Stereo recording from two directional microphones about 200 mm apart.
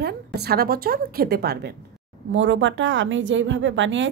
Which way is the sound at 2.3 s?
70° right (ahead or behind).